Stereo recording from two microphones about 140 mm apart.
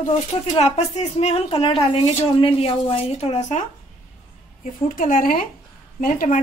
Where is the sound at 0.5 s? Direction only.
50° left (ahead or behind).